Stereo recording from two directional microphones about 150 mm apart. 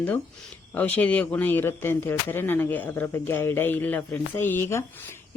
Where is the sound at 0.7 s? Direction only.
10° left (ahead or behind).